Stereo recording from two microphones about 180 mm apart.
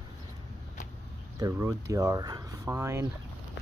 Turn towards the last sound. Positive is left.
turn(degrees=-15)  # may be behind; listen again after turning